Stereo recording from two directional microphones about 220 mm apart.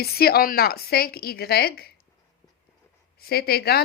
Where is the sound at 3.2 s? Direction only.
45° left (ahead or behind).